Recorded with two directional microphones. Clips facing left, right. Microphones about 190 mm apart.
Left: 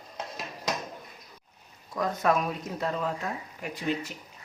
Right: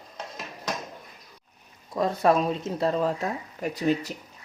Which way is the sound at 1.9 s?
30° right (ahead or behind).